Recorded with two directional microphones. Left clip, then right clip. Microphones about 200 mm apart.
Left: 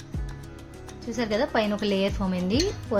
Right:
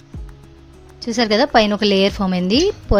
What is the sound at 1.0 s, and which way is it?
A woman's voice, 50° right (ahead or behind).